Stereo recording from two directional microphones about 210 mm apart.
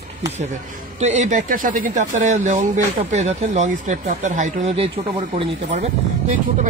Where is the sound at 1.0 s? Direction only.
30° right (ahead or behind).